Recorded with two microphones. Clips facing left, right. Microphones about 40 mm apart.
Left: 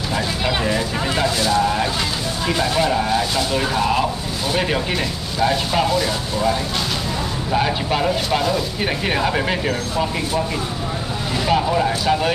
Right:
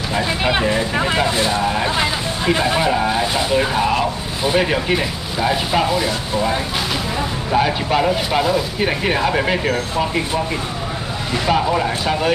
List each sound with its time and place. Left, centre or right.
0.1 s speech: right
7.5 s speech: centre
9.4 s speech: centre
11.4 s speech: centre